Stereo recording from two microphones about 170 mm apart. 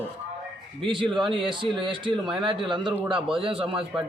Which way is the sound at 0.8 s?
30° right (ahead or behind).